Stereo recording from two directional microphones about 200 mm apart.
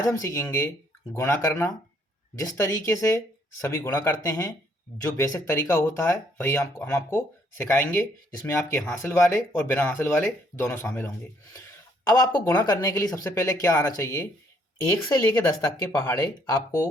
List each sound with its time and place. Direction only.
0.0 s speech: 15° left (ahead or behind)
15.6 s speech: 15° left (ahead or behind)